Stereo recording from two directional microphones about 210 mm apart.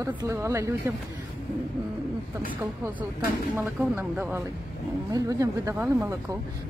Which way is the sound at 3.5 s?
10° right (ahead or behind).